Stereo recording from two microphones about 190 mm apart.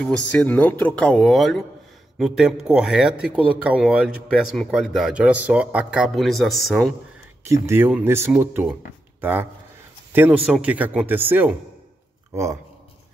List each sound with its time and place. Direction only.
0.0 s speech: 5° left (ahead or behind)
7.4 s speech: 15° right (ahead or behind)